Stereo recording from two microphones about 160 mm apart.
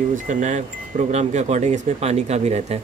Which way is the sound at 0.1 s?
50° right (ahead or behind).